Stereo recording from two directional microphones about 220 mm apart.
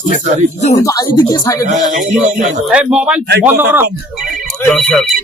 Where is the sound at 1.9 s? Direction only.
35° right (ahead or behind).